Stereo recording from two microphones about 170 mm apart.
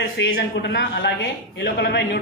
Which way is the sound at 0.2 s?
80° left.